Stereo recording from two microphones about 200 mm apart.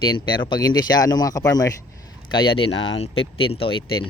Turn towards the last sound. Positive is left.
turn(degrees=25)  # may be behind; listen again after turning